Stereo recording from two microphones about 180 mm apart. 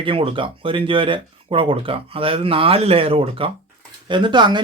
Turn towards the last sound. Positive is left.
turn(degrees=-25)  # may be behind; listen again after turning